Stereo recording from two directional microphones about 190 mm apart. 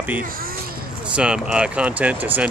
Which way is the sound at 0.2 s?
50° right (ahead or behind).